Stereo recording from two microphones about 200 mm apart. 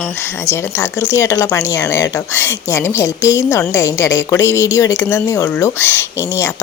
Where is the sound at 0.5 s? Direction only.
10° left (ahead or behind).